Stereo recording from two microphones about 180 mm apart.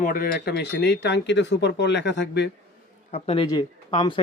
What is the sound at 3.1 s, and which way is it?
Speech, 30° left (ahead or behind).